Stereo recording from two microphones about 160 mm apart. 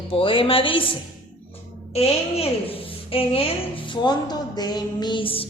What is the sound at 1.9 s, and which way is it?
A woman's voice, 40° left (ahead or behind).